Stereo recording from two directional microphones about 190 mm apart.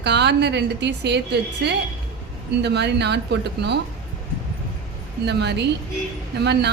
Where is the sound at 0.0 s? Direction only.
65° right (ahead or behind).